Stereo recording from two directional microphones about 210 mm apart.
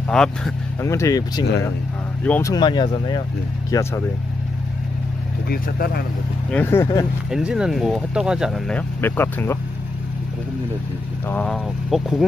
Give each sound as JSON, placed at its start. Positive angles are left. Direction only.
{"t": 0.1, "sound": "speech", "side_deg": 5}
{"t": 0.8, "sound": "speech", "side_deg": 15}
{"t": 2.5, "sound": "speech", "side_deg": 20}
{"t": 5.5, "sound": "speech", "side_deg": 45}
{"t": 6.5, "sound": "speech", "side_deg": 10}
{"t": 7.2, "sound": "speech", "side_deg": -5}
{"t": 11.2, "sound": "speech", "side_deg": 5}